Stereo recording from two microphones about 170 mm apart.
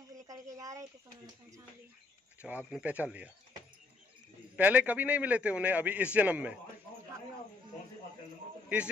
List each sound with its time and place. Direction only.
0.1 s speech: 20° right (ahead or behind)
2.4 s a man's voice: 10° right (ahead or behind)
4.6 s a man's voice: 10° right (ahead or behind)
8.7 s a man's voice: 10° right (ahead or behind)